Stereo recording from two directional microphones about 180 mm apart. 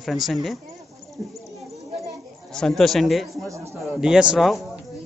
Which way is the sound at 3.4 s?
15° right (ahead or behind).